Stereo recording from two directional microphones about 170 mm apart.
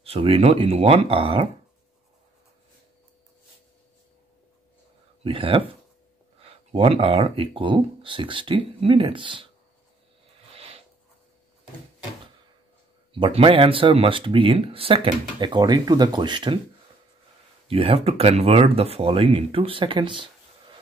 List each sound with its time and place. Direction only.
0.0 s speech: 35° right (ahead or behind)
5.2 s speech: 30° right (ahead or behind)
10.5 s a sound: 35° right (ahead or behind)
13.1 s speech: 30° right (ahead or behind)
17.6 s speech: 35° right (ahead or behind)